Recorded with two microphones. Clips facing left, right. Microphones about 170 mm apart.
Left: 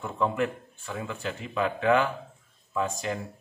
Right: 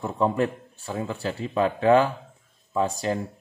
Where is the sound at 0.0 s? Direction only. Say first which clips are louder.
Right 4 dB; 35° right (ahead or behind).